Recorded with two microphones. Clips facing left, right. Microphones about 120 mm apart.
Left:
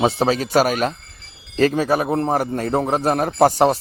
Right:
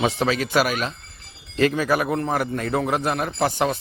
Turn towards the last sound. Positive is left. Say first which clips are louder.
# left 7 dB
turn(degrees=40)  # may be behind; listen again after turning